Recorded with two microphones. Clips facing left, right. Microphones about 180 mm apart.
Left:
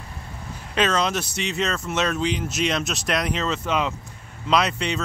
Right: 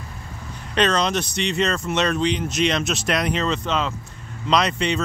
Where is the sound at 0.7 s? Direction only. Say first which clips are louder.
Right 2 dB; 5° left (ahead or behind).